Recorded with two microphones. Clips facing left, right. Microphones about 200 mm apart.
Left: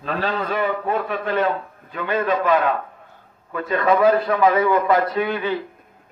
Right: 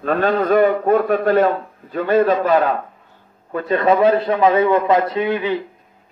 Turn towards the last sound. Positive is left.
turn(degrees=-20)  # may be behind; listen again after turning